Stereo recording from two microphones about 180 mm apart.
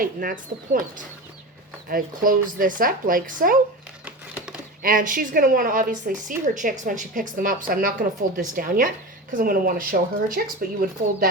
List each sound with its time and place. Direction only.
0.0 s a woman's voice: 50° right (ahead or behind)
4.0 s a sound: 5° right (ahead or behind)
4.8 s a woman's voice: 50° right (ahead or behind)